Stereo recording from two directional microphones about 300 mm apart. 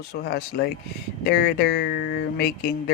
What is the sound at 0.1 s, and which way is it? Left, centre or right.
Speech, left.